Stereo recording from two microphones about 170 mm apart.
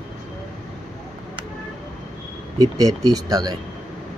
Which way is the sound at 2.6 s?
20° right (ahead or behind).